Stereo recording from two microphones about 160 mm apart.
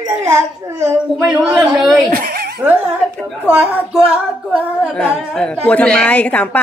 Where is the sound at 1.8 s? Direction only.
Centre (ahead or behind).